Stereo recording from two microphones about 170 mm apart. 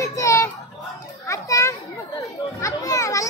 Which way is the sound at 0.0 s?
20° left (ahead or behind).